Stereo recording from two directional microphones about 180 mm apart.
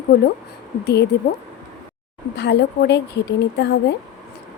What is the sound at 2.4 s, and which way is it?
A woman's voice, 70° left (ahead or behind).